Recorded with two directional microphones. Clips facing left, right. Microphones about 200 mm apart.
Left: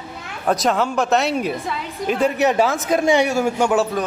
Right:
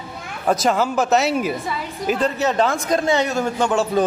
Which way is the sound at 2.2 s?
15° left (ahead or behind).